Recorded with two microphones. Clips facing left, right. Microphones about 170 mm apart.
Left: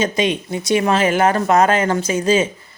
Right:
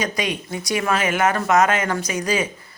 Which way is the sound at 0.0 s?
25° left (ahead or behind).